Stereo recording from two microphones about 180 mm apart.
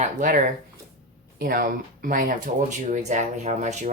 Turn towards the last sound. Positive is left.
turn(degrees=-40)  # may be behind; listen again after turning